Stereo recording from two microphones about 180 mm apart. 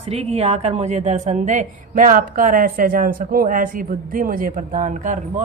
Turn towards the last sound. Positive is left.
turn(degrees=-40)  # may be behind; listen again after turning